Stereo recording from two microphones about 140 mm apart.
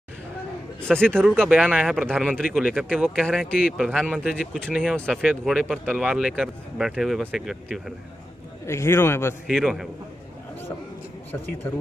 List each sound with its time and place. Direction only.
0.8 s speech: 5° left (ahead or behind)
8.6 s a man's voice: 20° left (ahead or behind)
9.5 s speech: centre (ahead or behind)